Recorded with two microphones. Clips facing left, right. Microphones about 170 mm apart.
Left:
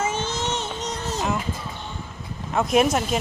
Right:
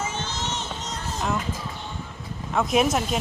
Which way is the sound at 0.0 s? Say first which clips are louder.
Left 5 dB; 50° left (ahead or behind).